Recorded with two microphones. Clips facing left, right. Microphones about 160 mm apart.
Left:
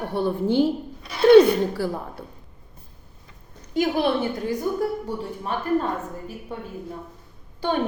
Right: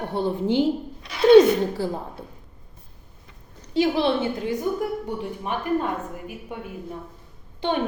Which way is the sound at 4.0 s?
20° right (ahead or behind).